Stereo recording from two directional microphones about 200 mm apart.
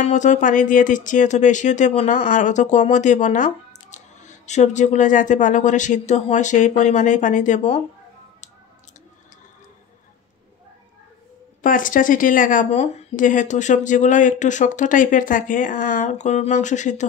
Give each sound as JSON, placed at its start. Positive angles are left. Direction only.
{"t": 0.0, "sound": "a woman's voice", "side_deg": 35}
{"t": 11.6, "sound": "a woman's voice", "side_deg": 40}